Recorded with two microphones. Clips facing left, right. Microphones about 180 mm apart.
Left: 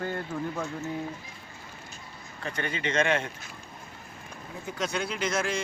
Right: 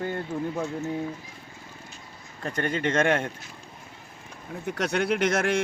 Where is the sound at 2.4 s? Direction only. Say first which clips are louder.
Right 5 dB; 45° right (ahead or behind).